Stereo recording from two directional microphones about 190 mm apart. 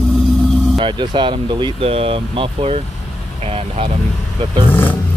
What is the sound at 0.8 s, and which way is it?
Speech, 25° right (ahead or behind).